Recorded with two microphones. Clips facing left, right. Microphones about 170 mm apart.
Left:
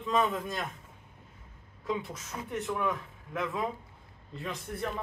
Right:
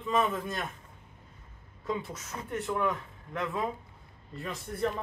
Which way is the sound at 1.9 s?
Centre (ahead or behind).